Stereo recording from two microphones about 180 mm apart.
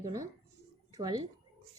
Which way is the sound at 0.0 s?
20° right (ahead or behind).